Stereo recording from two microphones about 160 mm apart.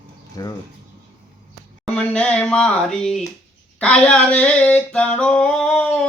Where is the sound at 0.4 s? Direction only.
25° left (ahead or behind).